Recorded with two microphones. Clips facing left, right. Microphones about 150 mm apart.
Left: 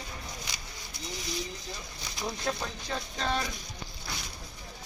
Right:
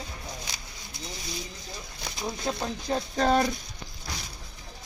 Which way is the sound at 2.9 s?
40° right (ahead or behind).